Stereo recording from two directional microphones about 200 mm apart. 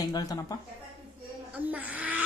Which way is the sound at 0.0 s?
20° left (ahead or behind).